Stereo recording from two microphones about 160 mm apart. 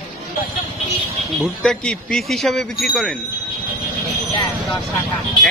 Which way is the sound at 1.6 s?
5° left (ahead or behind).